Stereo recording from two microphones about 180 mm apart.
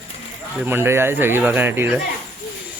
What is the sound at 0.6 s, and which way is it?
Speech, 10° right (ahead or behind).